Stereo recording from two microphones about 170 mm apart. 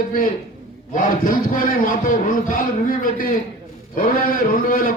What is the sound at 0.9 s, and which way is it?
A man's voice, 55° left (ahead or behind).